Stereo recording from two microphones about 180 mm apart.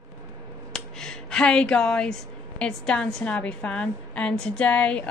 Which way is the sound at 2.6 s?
5° left (ahead or behind).